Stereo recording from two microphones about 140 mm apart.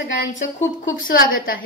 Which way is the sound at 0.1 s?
65° left (ahead or behind).